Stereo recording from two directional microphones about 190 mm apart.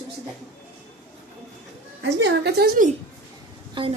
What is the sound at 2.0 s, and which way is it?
Speech, 65° right (ahead or behind).